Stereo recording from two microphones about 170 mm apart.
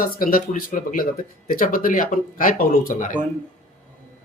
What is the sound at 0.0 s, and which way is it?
Speech, 55° left (ahead or behind).